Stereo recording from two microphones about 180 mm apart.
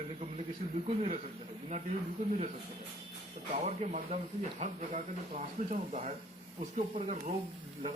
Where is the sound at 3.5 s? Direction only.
40° right (ahead or behind).